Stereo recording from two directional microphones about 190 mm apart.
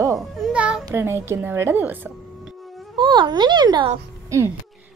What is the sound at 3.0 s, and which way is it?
A child's voice, 25° right (ahead or behind).